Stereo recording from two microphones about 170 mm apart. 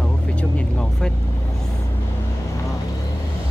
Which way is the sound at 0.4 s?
5° left (ahead or behind).